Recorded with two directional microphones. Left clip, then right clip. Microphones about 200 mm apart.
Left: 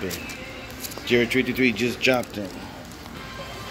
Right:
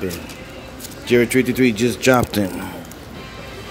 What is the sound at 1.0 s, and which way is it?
Speech, 20° right (ahead or behind).